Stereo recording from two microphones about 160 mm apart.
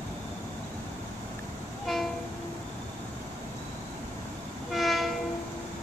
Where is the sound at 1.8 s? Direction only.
Centre (ahead or behind).